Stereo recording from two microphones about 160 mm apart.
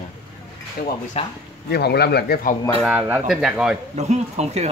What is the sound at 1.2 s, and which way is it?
Speech, 40° left (ahead or behind).